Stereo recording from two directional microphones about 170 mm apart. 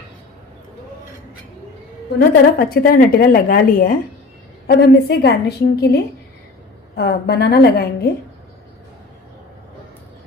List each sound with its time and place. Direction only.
2.1 s a woman's voice: 60° left (ahead or behind)